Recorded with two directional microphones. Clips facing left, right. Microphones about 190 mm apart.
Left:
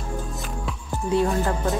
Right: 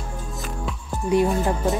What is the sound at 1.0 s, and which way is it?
Speech, 15° right (ahead or behind).